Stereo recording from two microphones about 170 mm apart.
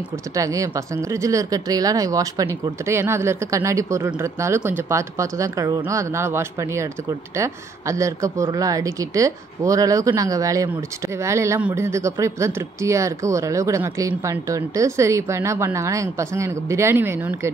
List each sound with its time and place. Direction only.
0.4 s speech: 20° right (ahead or behind)